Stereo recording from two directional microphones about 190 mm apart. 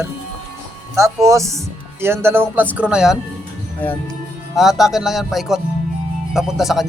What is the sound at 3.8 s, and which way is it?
Speech, 10° left (ahead or behind).